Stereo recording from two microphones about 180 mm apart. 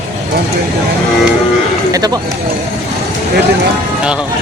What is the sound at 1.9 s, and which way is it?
Speech, 20° right (ahead or behind).